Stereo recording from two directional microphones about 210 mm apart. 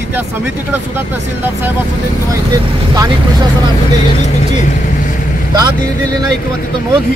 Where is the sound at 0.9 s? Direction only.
10° right (ahead or behind).